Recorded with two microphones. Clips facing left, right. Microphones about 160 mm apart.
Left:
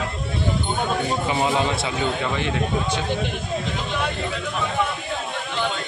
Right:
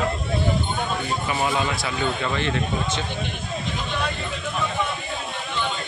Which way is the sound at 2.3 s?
10° left (ahead or behind).